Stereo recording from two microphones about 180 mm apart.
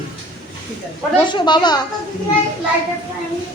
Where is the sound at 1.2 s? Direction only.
25° left (ahead or behind).